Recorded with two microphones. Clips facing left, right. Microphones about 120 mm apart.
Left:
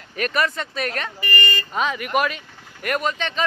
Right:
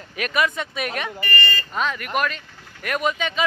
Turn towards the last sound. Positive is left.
turn(degrees=-5)  # may be behind; listen again after turning